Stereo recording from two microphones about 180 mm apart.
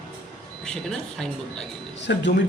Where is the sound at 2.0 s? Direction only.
75° left (ahead or behind).